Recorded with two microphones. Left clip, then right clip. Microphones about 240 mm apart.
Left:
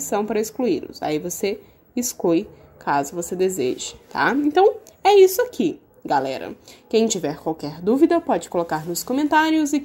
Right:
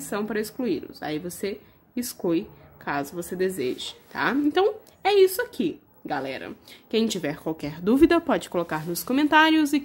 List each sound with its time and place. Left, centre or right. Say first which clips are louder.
0.1 s a woman's voice: left 6 dB; centre